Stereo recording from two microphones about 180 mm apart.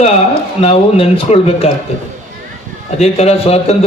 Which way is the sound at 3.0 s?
35° left (ahead or behind).